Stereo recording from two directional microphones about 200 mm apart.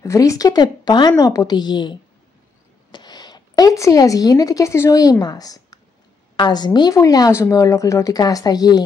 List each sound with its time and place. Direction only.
0.0 s a woman's voice: 15° left (ahead or behind)